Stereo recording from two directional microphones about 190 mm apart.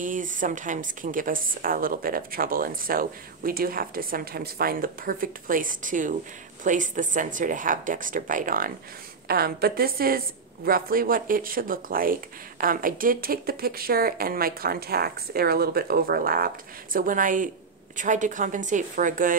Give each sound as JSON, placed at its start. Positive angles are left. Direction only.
{"t": 0.0, "sound": "a woman's voice", "side_deg": -45}